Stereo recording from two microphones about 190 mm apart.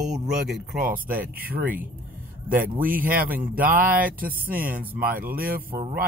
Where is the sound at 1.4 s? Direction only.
50° right (ahead or behind).